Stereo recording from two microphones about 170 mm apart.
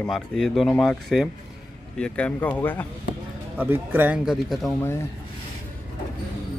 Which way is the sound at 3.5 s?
10° right (ahead or behind).